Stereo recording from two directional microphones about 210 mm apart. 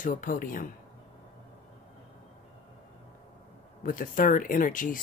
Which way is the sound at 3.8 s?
40° left (ahead or behind).